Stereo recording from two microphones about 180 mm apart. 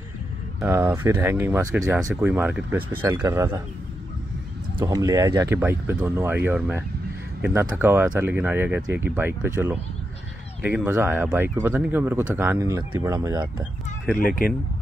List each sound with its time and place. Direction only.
0.8 s speech: 10° right (ahead or behind)
3.1 s speech: 20° right (ahead or behind)
4.7 s speech: 20° right (ahead or behind)
14.1 s speech: 50° left (ahead or behind)